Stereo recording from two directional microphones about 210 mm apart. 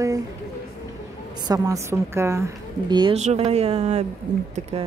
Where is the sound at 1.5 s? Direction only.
15° right (ahead or behind).